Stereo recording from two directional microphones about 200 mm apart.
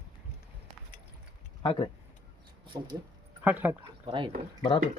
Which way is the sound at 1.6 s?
25° left (ahead or behind).